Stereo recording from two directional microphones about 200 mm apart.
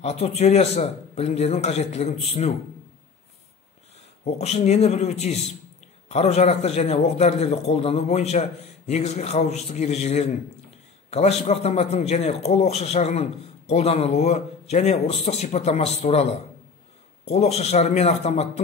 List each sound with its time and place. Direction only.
0.0 s a man's voice: 30° left (ahead or behind)
4.2 s a man's voice: 30° left (ahead or behind)